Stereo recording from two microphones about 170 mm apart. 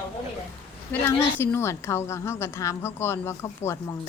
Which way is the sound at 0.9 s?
15° left (ahead or behind).